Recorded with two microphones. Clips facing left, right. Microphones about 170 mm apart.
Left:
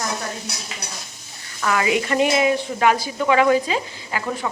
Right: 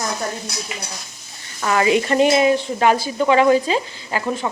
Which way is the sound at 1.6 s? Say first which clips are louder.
Right 3 dB; 30° right (ahead or behind).